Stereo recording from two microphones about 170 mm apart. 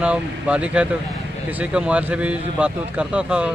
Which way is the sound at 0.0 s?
5° right (ahead or behind).